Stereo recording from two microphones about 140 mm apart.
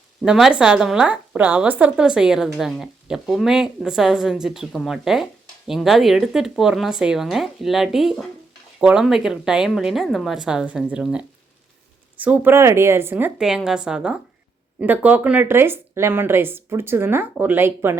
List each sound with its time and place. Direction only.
0.2 s a woman's voice: centre (ahead or behind)